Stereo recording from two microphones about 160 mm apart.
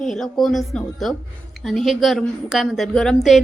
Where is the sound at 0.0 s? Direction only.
5° left (ahead or behind).